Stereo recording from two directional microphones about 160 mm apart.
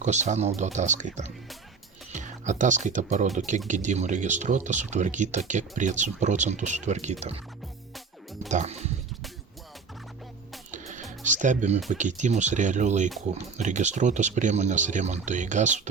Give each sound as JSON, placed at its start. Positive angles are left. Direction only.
{"t": 0.0, "sound": "speech", "side_deg": -45}
{"t": 8.4, "sound": "speech", "side_deg": -45}
{"t": 10.7, "sound": "music", "side_deg": -50}
{"t": 11.2, "sound": "speech", "side_deg": -50}